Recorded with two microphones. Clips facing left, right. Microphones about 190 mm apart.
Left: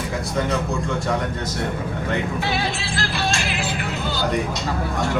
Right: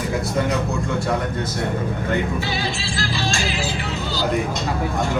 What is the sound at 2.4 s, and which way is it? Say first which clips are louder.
Music: left 1 dB; 60° left (ahead or behind).